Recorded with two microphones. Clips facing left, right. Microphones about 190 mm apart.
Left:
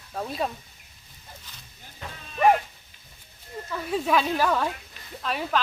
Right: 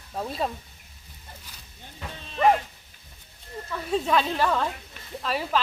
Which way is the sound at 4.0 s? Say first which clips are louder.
Left 2 dB; 5° left (ahead or behind).